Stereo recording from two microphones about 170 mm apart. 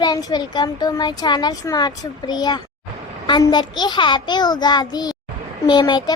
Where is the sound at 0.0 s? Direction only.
20° left (ahead or behind).